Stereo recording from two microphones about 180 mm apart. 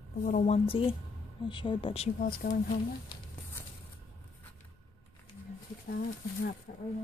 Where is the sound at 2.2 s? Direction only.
50° left (ahead or behind).